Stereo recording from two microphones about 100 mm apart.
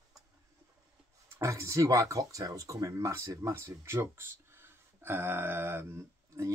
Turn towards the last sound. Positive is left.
turn(degrees=-30)  # may be behind; listen again after turning